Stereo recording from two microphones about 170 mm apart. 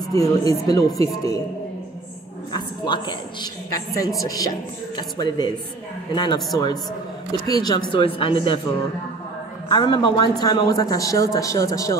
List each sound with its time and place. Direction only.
0.1 s speech: 20° left (ahead or behind)
2.5 s a sound: 25° left (ahead or behind)
3.7 s speech: 20° left (ahead or behind)